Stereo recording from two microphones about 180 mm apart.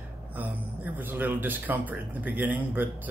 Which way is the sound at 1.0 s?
10° right (ahead or behind).